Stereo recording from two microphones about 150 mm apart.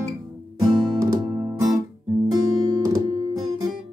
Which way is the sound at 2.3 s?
25° right (ahead or behind).